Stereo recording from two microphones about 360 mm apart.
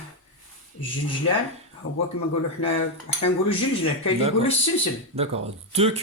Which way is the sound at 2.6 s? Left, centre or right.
Left.